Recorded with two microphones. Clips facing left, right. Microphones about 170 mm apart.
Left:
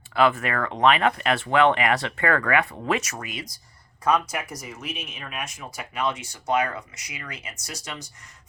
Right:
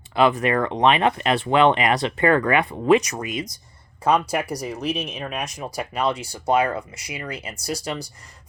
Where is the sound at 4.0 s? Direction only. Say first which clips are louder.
Right 3 dB; 30° right (ahead or behind).